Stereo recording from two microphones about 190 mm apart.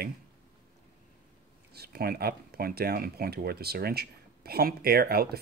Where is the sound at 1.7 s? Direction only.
55° right (ahead or behind).